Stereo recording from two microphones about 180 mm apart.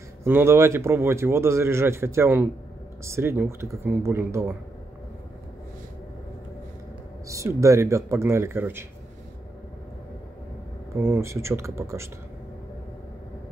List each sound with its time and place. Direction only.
0.2 s speech: 15° right (ahead or behind)
7.2 s speech: 15° right (ahead or behind)
11.1 s speech: 15° right (ahead or behind)